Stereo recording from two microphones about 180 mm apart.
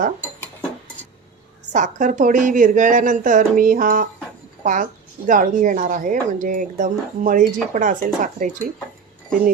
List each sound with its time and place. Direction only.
1.7 s a woman's voice: 45° right (ahead or behind)